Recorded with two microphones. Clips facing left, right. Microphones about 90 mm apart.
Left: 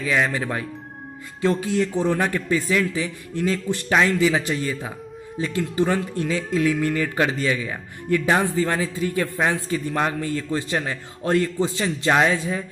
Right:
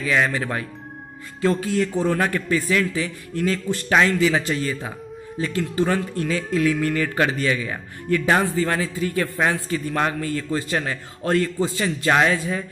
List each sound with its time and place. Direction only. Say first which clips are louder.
0.1 s a man's voice: right 1 dB; 15° left (ahead or behind)